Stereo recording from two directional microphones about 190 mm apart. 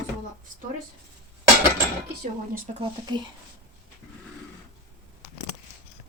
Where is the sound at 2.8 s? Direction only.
25° right (ahead or behind).